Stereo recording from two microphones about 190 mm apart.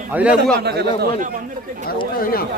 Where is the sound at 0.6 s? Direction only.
60° right (ahead or behind).